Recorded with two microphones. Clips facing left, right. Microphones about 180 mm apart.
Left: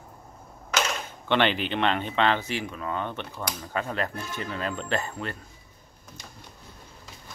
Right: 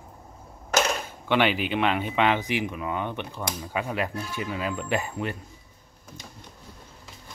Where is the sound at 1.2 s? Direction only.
10° right (ahead or behind).